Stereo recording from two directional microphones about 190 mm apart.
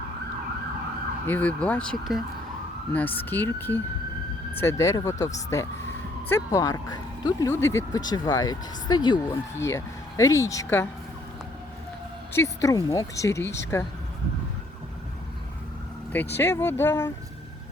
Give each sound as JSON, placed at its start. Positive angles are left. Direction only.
{"t": 1.3, "sound": "speech", "side_deg": 5}
{"t": 12.3, "sound": "speech", "side_deg": 15}
{"t": 16.2, "sound": "speech", "side_deg": 60}
{"t": 16.6, "sound": "speech", "side_deg": 10}